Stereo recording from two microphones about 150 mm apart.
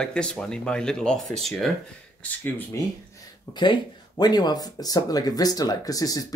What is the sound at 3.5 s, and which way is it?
Speech, 30° left (ahead or behind).